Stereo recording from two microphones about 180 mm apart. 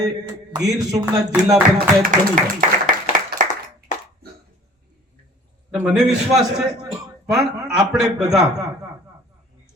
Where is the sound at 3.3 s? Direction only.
25° right (ahead or behind).